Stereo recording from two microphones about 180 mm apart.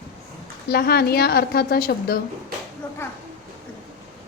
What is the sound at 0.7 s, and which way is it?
A woman's voice, 60° left (ahead or behind).